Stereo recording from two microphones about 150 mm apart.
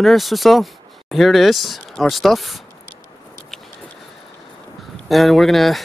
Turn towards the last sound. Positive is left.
turn(degrees=0)  # may be behind; listen again after turning